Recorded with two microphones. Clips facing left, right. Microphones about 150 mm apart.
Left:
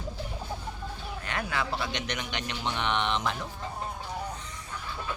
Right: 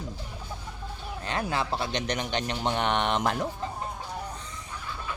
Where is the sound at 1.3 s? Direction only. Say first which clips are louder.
Right 3 dB; 30° right (ahead or behind); by 3.4 s 50° right (ahead or behind).